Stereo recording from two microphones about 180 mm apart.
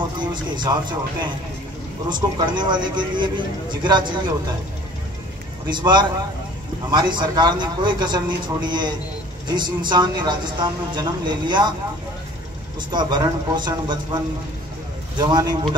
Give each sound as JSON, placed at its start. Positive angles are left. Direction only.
{"t": 0.2, "sound": "a man's voice", "side_deg": -25}
{"t": 5.7, "sound": "a man's voice", "side_deg": -25}
{"t": 12.9, "sound": "a man's voice", "side_deg": -25}
{"t": 15.1, "sound": "a man's voice", "side_deg": -25}